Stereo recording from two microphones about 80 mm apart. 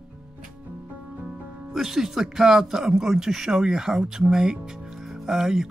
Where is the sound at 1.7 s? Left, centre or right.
Centre.